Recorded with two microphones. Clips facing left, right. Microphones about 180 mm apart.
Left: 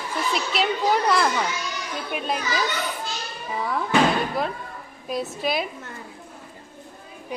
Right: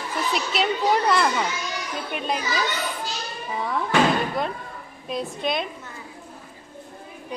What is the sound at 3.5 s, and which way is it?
Speech, centre (ahead or behind).